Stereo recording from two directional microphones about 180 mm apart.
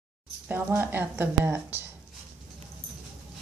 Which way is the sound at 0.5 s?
10° right (ahead or behind).